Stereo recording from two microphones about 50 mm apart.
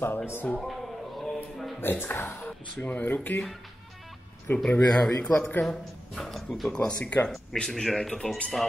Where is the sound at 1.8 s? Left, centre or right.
Left.